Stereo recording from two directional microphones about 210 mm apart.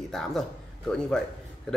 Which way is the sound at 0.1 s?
Centre (ahead or behind).